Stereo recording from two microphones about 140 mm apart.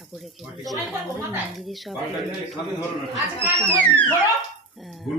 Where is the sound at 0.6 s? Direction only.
Centre (ahead or behind).